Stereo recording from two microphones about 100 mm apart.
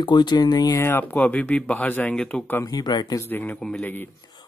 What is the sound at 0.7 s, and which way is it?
Speech, 20° left (ahead or behind).